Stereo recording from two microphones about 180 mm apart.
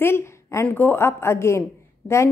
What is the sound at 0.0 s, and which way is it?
A woman's voice, 15° left (ahead or behind).